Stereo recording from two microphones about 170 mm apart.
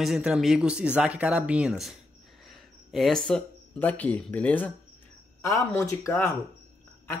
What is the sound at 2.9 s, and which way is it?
Speech, centre (ahead or behind).